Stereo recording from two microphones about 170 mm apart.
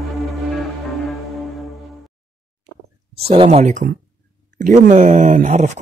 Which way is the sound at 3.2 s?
35° right (ahead or behind).